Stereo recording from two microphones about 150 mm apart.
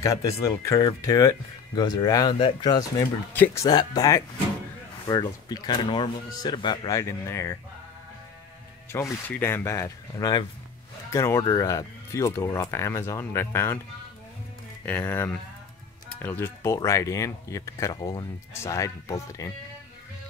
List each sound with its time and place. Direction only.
0.0 s speech: 20° left (ahead or behind)
3.3 s speech: 20° left (ahead or behind)
8.9 s speech: 20° left (ahead or behind)
14.9 s speech: 10° left (ahead or behind)